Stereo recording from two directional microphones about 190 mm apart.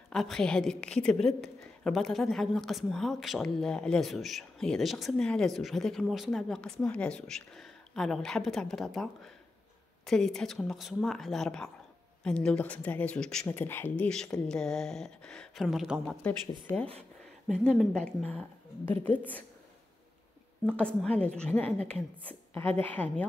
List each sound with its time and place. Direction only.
0.1 s a woman's voice: centre (ahead or behind)
20.6 s a woman's voice: 5° left (ahead or behind)